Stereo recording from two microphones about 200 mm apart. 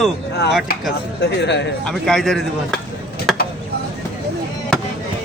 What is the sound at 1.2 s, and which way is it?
Speech, 60° left (ahead or behind).